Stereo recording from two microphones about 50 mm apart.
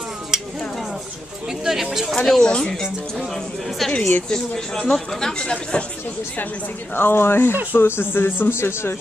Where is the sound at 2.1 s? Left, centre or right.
Centre.